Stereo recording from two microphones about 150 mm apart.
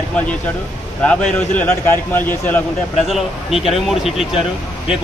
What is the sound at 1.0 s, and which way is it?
A man's voice, 10° left (ahead or behind).